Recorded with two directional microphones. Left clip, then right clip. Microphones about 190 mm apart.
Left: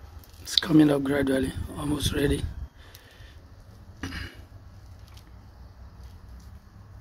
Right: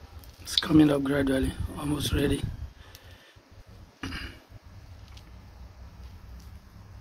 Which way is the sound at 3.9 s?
10° left (ahead or behind).